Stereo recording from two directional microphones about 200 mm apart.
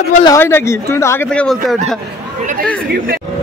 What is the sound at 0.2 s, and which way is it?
Speech, 15° left (ahead or behind).